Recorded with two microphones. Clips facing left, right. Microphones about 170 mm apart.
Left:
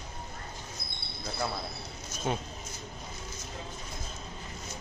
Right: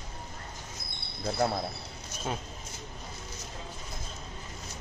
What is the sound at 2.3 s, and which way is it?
Speech, centre (ahead or behind).